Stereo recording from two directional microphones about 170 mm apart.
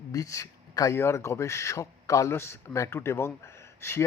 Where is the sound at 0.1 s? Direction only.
20° left (ahead or behind).